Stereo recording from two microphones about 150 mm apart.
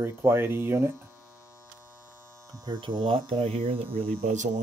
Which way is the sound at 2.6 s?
30° right (ahead or behind).